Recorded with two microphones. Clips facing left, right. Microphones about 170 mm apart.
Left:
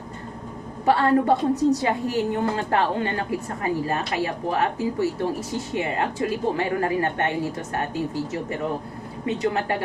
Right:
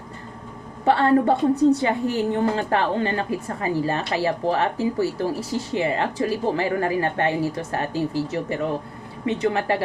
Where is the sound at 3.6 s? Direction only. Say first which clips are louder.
Right 2 dB; 30° right (ahead or behind).